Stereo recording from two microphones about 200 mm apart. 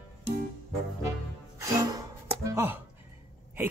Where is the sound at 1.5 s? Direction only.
15° right (ahead or behind).